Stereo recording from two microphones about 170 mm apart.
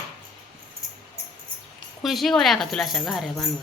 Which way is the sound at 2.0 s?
Centre (ahead or behind).